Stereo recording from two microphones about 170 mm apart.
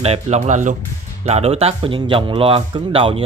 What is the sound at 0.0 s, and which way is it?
Speech, 40° right (ahead or behind).